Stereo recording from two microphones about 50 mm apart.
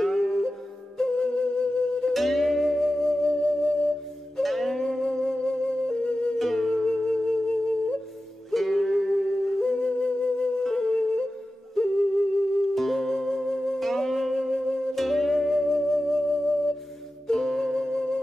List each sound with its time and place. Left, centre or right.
0.0 s music: centre
2.1 s music: centre; by 3.9 s left
4.4 s music: centre
4.8 s music: centre
6.3 s music: centre
8.5 s music: centre
10.6 s music: centre
12.7 s music: centre
17.3 s flute: centre